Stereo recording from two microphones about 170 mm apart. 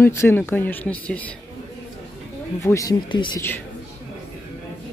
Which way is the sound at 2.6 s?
20° left (ahead or behind).